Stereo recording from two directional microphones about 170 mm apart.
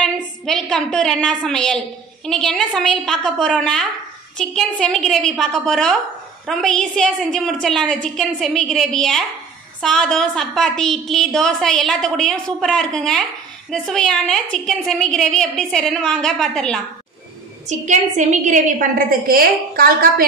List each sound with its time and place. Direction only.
0.0 s a woman's voice: 5° left (ahead or behind)
17.6 s a woman's voice: 45° right (ahead or behind)